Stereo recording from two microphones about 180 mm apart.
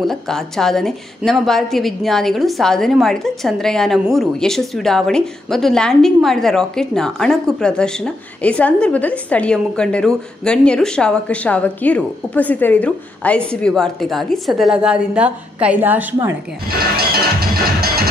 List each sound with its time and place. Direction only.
0.0 s a woman's voice: centre (ahead or behind)
16.6 s music: 60° right (ahead or behind)